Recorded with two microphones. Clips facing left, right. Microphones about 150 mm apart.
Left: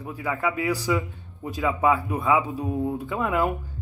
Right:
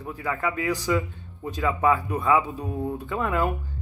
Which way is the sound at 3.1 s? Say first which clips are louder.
Right 1 dB; 15° left (ahead or behind).